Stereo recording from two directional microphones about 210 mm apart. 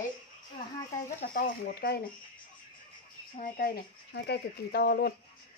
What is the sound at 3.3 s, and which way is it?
Speech, 40° left (ahead or behind).